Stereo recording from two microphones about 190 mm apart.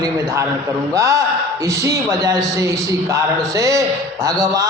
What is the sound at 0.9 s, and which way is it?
A man's voice, 15° right (ahead or behind).